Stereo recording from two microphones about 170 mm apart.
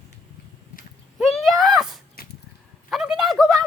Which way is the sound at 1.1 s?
Centre (ahead or behind).